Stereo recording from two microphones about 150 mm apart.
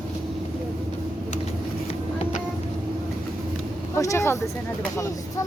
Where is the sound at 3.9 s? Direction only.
20° left (ahead or behind).